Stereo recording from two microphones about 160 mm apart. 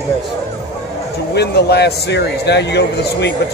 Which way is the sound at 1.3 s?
90° left.